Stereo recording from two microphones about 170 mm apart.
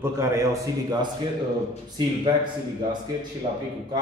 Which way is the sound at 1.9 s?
25° right (ahead or behind).